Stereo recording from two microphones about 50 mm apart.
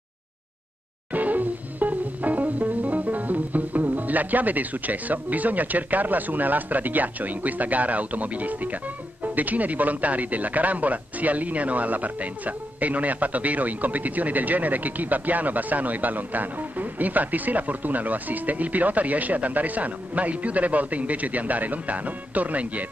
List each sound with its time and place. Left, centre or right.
1.1 s music: right
9.2 s speech: right